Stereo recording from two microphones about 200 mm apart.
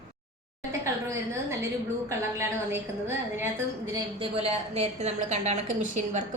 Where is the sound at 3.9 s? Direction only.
25° right (ahead or behind).